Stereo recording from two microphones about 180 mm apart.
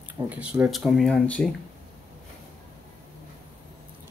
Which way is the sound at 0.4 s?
5° right (ahead or behind).